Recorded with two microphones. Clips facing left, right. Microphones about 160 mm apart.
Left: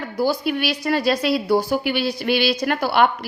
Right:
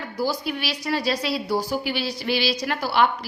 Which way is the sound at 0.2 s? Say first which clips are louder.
Left 5 dB; 55° left (ahead or behind).